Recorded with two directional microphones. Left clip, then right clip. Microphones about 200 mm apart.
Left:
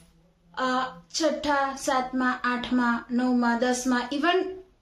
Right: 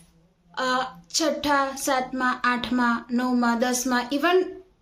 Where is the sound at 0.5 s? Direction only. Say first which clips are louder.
Right 2 dB; 30° right (ahead or behind).